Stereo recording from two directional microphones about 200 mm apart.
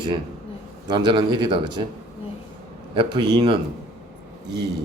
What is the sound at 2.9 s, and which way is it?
Speech, 25° right (ahead or behind).